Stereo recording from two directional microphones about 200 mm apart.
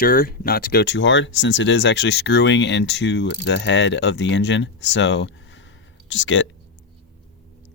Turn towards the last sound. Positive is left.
turn(degrees=70)  # may be behind; listen again after turning